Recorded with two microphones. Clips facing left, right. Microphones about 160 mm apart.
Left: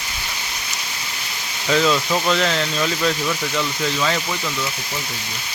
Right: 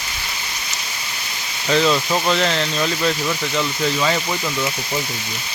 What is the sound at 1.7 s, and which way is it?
Speech, centre (ahead or behind).